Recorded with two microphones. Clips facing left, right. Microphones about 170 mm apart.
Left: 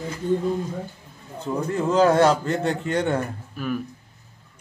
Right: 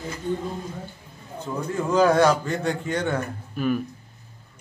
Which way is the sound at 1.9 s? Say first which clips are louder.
Left 1 dB; 30° left (ahead or behind).